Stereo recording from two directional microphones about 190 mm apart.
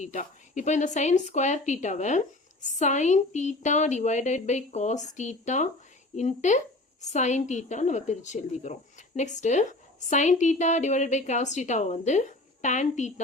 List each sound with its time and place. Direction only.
0.0 s a woman's voice: 40° left (ahead or behind)